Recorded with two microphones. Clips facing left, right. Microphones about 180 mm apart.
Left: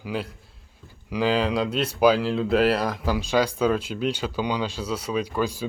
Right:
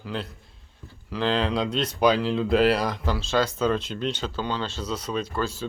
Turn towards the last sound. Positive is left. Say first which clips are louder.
# left 3 dB
turn(degrees=10)  # may be behind; listen again after turning